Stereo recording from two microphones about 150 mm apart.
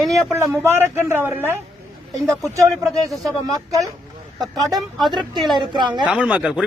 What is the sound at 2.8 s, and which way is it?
Speech, 20° right (ahead or behind).